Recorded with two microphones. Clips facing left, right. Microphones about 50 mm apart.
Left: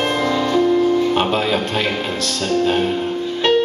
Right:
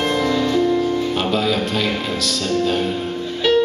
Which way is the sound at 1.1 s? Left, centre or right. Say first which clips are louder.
Left 2 dB; left.